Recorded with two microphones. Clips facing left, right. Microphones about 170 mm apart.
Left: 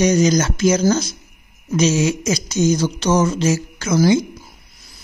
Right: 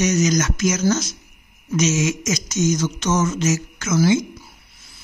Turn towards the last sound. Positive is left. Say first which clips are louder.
# left 3 dB
turn(degrees=35)  # may be behind; listen again after turning